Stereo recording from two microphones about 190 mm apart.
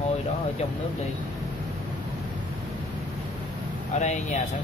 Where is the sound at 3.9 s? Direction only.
40° left (ahead or behind).